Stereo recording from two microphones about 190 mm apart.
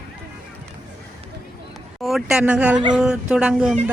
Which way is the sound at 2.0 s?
Centre (ahead or behind).